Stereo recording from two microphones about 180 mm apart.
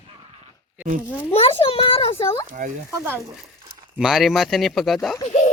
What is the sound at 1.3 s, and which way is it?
Speech, 30° left (ahead or behind).